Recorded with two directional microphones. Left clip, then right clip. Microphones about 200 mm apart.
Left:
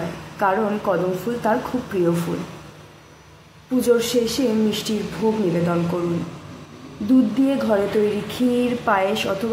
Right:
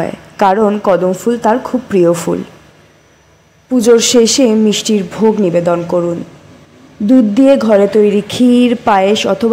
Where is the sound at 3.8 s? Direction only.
45° right (ahead or behind).